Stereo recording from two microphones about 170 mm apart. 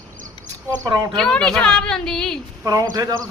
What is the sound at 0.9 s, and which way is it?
Speech, 25° right (ahead or behind).